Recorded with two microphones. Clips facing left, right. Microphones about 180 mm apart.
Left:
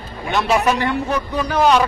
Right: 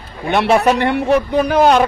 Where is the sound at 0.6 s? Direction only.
65° right (ahead or behind).